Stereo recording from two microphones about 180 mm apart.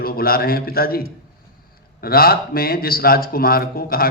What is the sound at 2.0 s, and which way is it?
A man's voice, 55° left (ahead or behind).